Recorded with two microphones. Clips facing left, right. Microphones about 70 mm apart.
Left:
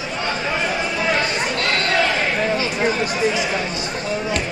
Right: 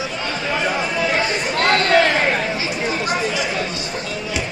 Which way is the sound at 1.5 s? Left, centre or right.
Right.